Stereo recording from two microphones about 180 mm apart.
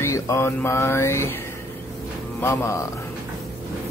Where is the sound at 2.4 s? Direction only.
15° left (ahead or behind).